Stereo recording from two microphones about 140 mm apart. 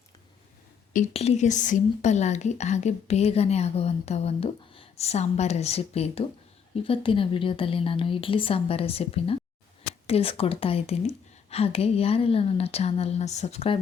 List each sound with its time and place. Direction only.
1.1 s a woman's voice: 50° left (ahead or behind)